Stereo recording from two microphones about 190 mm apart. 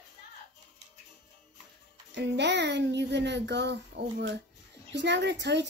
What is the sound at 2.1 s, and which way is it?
Speech, 65° right (ahead or behind).